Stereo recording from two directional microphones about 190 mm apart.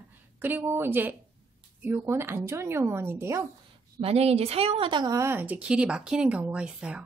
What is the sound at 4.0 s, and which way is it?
A woman's voice, 30° right (ahead or behind).